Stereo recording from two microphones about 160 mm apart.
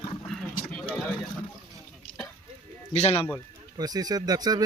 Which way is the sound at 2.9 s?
40° left (ahead or behind).